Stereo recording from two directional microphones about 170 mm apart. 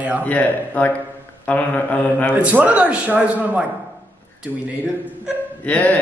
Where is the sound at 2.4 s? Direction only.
10° right (ahead or behind).